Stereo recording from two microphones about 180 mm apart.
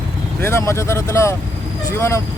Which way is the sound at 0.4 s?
15° left (ahead or behind).